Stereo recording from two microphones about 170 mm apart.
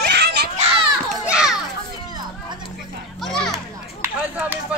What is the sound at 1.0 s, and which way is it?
Children playing, 5° right (ahead or behind).